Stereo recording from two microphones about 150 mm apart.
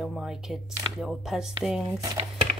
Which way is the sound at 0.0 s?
5° right (ahead or behind).